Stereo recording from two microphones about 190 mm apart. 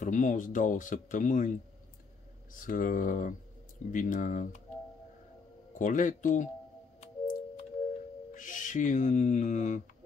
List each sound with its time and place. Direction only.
0.0 s speech: 40° left (ahead or behind)
2.5 s speech: 45° left (ahead or behind)
5.8 s speech: 40° left (ahead or behind)
7.0 s music: 40° left (ahead or behind)
8.3 s speech: 45° left (ahead or behind)